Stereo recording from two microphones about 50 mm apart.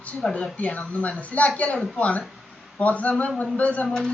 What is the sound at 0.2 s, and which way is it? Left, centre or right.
Speech, left.